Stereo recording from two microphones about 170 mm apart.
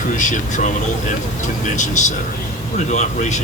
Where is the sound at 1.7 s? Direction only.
45° left (ahead or behind).